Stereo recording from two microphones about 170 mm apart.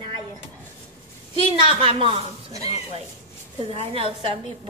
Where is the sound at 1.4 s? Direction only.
30° right (ahead or behind).